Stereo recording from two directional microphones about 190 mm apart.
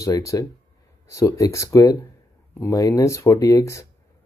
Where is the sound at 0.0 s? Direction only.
15° left (ahead or behind).